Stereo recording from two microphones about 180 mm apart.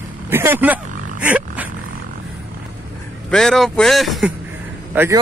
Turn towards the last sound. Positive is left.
turn(degrees=-15)  # may be behind; listen again after turning